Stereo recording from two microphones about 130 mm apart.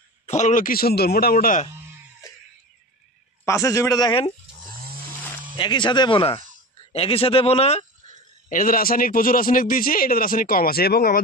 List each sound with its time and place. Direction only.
0.3 s a man's voice: 70° left (ahead or behind); by 1.7 s 90° left
3.4 s a man's voice: 20° left (ahead or behind)
5.6 s speech: 35° left (ahead or behind); by 7.8 s 50° left (ahead or behind)
8.5 s a man's voice: 90° left